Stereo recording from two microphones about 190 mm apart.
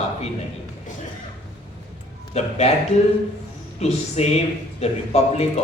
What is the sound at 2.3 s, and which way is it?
Speech, 35° left (ahead or behind).